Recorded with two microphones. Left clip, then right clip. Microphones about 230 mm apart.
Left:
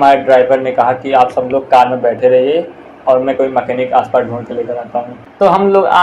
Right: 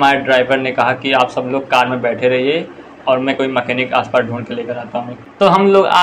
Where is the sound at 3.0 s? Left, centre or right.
Right.